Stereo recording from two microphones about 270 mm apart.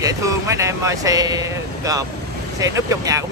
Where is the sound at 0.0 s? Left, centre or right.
Centre.